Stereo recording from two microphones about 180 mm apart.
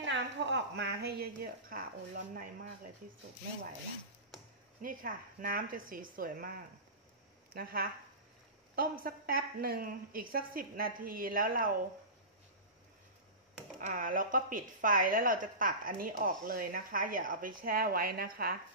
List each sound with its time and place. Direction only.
0.0 s a woman's voice: 90° right; by 2.4 s 50° right (ahead or behind)
4.8 s a woman's voice: 50° right (ahead or behind)
7.5 s a woman's voice: 55° right (ahead or behind)
13.7 s a woman's voice: 50° right (ahead or behind)